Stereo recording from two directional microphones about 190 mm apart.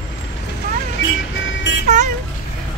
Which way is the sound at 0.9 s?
75° left (ahead or behind).